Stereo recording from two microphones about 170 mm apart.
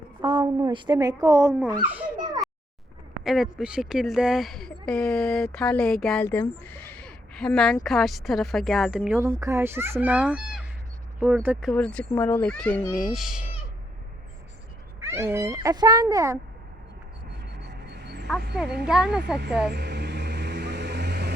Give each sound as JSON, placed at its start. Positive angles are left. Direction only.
{"t": 0.2, "sound": "speech", "side_deg": -25}
{"t": 1.8, "sound": "speech", "side_deg": -10}
{"t": 2.1, "sound": "a sound", "side_deg": -25}
{"t": 3.2, "sound": "speech", "side_deg": 0}
{"t": 6.2, "sound": "a woman's voice", "side_deg": 15}
{"t": 11.7, "sound": "speech", "side_deg": 5}
{"t": 15.0, "sound": "speech", "side_deg": -15}
{"t": 17.6, "sound": "vehicle", "side_deg": -80}
{"t": 18.9, "sound": "speech", "side_deg": -5}
{"t": 19.6, "sound": "vehicle", "side_deg": -85}